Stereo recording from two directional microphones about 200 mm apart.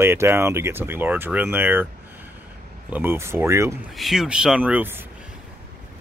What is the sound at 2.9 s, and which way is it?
Speech, 10° right (ahead or behind).